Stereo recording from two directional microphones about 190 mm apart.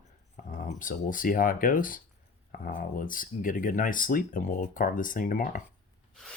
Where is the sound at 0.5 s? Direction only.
45° left (ahead or behind).